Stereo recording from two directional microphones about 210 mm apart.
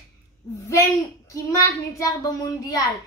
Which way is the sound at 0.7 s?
15° left (ahead or behind).